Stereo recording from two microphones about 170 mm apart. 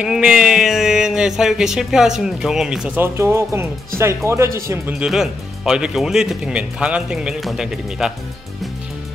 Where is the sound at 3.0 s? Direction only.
15° right (ahead or behind).